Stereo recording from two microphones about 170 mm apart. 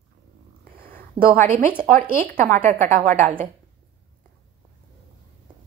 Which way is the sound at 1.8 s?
55° right (ahead or behind).